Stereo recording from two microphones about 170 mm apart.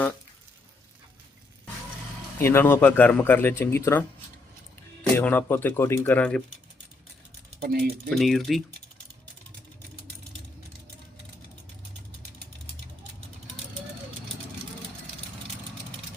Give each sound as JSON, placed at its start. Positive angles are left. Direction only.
{"t": 2.4, "sound": "speech", "side_deg": 15}
{"t": 5.1, "sound": "speech", "side_deg": 10}
{"t": 7.6, "sound": "speech", "side_deg": -60}
{"t": 8.1, "sound": "speech", "side_deg": 0}